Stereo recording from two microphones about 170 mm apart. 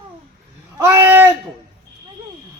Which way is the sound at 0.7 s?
15° right (ahead or behind).